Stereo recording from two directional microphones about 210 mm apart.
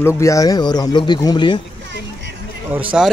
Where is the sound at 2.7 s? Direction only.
30° right (ahead or behind).